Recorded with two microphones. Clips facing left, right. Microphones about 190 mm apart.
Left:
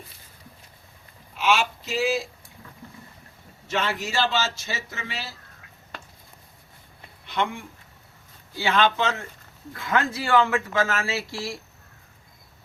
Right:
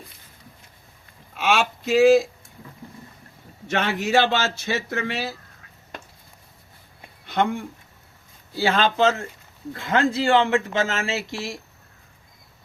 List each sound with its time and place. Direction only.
1.4 s speech: 50° right (ahead or behind)
3.7 s a man's voice: 55° right (ahead or behind)
7.3 s speech: 45° right (ahead or behind)
8.5 s speech: 35° right (ahead or behind)